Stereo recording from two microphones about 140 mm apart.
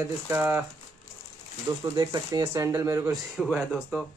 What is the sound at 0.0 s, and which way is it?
Speech, 15° right (ahead or behind).